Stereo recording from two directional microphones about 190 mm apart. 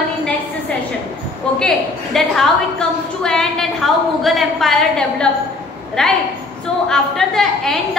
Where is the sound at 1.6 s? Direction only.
Centre (ahead or behind).